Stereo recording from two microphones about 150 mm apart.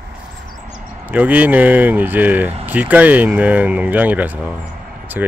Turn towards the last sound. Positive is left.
turn(degrees=-10)  # may be behind; listen again after turning